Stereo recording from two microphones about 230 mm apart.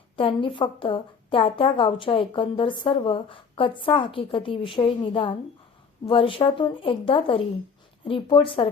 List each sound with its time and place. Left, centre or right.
0.2 s a woman's voice: left